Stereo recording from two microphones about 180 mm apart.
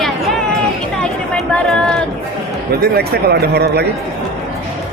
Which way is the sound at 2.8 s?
60° right (ahead or behind).